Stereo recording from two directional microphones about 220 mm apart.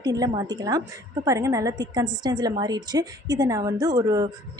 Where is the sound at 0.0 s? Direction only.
15° right (ahead or behind).